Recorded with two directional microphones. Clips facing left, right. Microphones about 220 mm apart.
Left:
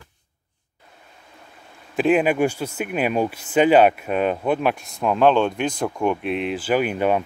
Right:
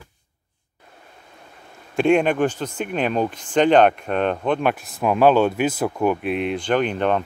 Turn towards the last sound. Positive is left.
turn(degrees=10)  # may be behind; listen again after turning